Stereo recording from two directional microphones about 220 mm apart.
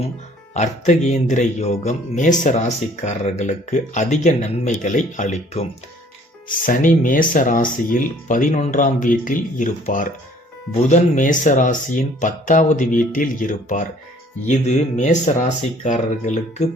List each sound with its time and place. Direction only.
0.5 s speech: 30° left (ahead or behind)
6.7 s speech: 35° left (ahead or behind)
14.9 s speech: 30° left (ahead or behind)